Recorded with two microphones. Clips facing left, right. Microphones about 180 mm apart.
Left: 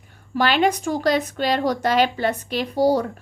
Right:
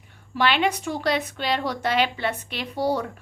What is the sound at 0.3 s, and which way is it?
A woman's voice, 40° left (ahead or behind).